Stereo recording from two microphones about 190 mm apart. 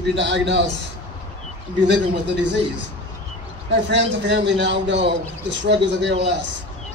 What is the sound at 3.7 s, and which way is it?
A man's voice, 65° right (ahead or behind).